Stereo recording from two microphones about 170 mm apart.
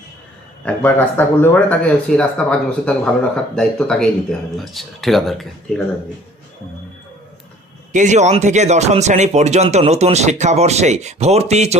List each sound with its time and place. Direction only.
0.6 s speech: 10° left (ahead or behind)
7.9 s speech: 45° right (ahead or behind)